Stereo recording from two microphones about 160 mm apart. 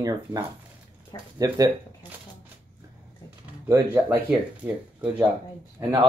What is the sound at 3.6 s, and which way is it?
Speech, 15° right (ahead or behind).